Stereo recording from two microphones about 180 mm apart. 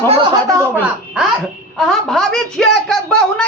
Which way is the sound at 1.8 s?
Centre (ahead or behind).